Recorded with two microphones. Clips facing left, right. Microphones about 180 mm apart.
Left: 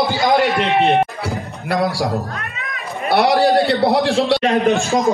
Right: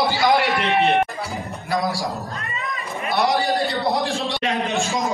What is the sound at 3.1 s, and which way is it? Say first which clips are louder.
A man's voice: left 7 dB; 70° left (ahead or behind).